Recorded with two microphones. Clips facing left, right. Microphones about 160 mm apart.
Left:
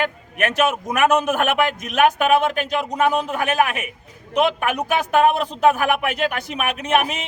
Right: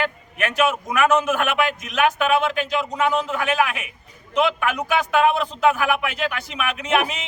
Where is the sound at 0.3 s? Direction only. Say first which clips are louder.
Left 1 dB; 45° left (ahead or behind).